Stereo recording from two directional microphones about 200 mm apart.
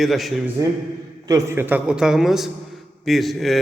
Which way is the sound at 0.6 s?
15° right (ahead or behind).